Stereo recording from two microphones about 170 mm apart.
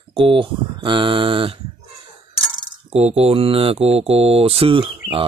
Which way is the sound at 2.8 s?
40° right (ahead or behind).